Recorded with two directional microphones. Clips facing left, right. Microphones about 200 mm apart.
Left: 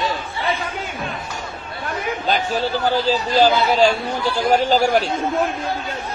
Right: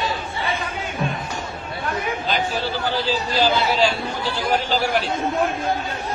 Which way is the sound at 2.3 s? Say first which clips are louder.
Left 5 dB; 45° left (ahead or behind).